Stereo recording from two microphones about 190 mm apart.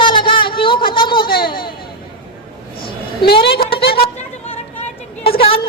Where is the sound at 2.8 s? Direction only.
25° left (ahead or behind).